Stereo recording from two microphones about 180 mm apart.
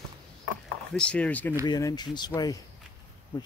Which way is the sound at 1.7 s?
20° left (ahead or behind).